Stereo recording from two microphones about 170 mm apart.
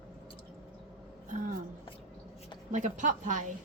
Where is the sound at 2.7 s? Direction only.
45° right (ahead or behind).